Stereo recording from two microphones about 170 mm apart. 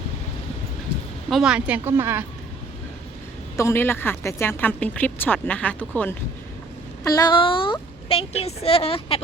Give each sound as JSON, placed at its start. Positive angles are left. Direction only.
{"t": 1.3, "sound": "a woman's voice", "side_deg": -5}
{"t": 3.6, "sound": "speech", "side_deg": 15}
{"t": 7.0, "sound": "a woman's voice", "side_deg": 25}